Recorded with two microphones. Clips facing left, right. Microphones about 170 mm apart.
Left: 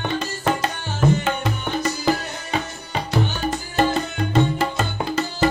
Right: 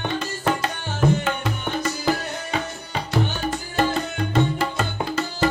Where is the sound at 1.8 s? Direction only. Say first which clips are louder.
Left 2 dB; 20° left (ahead or behind).